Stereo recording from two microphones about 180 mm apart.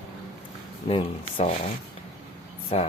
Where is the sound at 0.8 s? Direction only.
30° left (ahead or behind).